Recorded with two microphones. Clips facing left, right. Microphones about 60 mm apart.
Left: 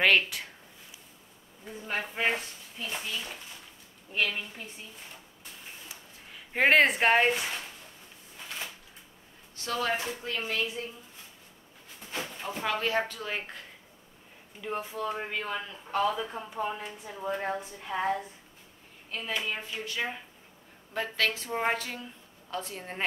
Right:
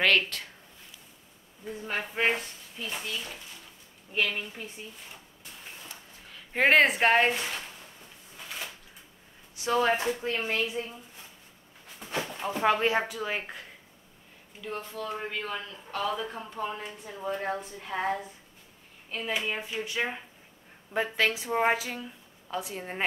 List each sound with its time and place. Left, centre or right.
0.0 s speech: centre
1.6 s speech: centre
5.9 s a sound: centre
9.6 s speech: right
12.6 s speech: right
13.1 s a woman's voice: centre
14.6 s a woman's voice: centre